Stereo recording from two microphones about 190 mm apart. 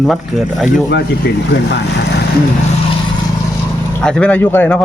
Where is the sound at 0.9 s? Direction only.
60° left (ahead or behind).